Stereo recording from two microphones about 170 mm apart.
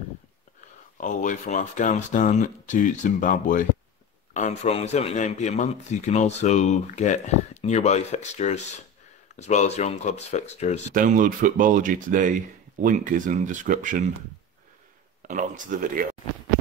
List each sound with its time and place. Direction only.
0.9 s speech: 50° left (ahead or behind)
10.9 s speech: 55° right (ahead or behind)
15.2 s speech: 50° right (ahead or behind)